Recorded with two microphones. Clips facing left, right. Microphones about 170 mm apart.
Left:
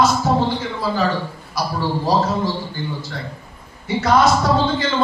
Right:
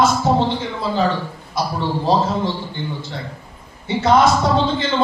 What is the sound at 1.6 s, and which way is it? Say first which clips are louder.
Speech: right 1 dB; 25° right (ahead or behind).